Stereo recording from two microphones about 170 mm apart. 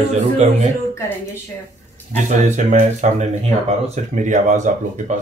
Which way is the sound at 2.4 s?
45° right (ahead or behind).